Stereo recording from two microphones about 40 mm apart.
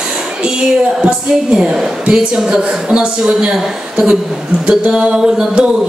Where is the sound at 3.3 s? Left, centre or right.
Right.